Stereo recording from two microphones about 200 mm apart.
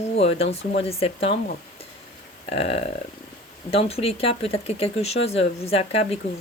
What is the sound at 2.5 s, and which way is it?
A woman's voice, 30° left (ahead or behind).